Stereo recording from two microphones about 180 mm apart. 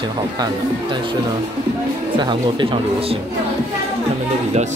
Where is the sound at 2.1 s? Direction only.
25° right (ahead or behind).